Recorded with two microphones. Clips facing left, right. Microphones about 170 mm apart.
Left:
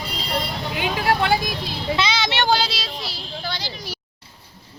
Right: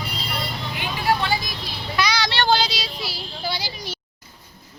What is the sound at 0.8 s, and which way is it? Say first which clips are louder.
Vehicle: left 2 dB; 60° left (ahead or behind).